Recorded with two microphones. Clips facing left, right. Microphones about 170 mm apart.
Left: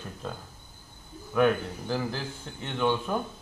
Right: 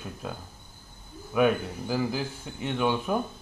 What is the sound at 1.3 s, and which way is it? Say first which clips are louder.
Speech: even; 10° right (ahead or behind).